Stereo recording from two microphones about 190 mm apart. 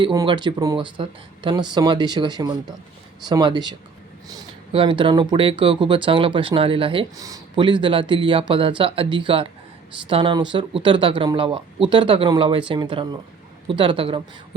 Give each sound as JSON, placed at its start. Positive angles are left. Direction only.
{"t": 0.0, "sound": "speech", "side_deg": -20}